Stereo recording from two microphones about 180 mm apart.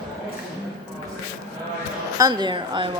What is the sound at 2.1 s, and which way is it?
Speech, 25° right (ahead or behind).